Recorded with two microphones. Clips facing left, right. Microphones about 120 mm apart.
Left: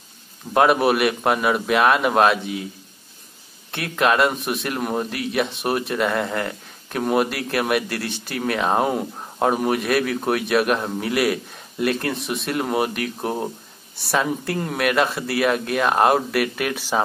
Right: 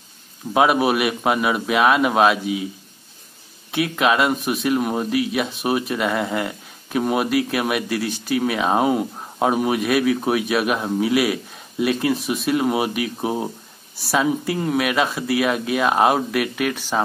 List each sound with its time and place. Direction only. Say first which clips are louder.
0.5 s a man's voice: even; centre (ahead or behind)
3.7 s a man's voice: right 1 dB; centre (ahead or behind)